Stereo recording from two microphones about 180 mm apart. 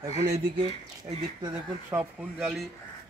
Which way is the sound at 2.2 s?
Centre (ahead or behind).